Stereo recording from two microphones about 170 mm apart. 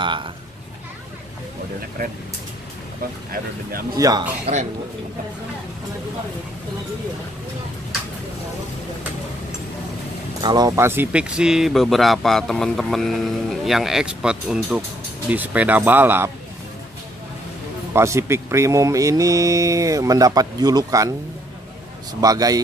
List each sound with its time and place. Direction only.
0.0 s speech: 30° right (ahead or behind)
3.9 s speech: 20° right (ahead or behind)
4.5 s speech: 35° right (ahead or behind)
10.4 s speech: 25° right (ahead or behind)
17.9 s speech: 15° right (ahead or behind)
22.2 s speech: 20° right (ahead or behind)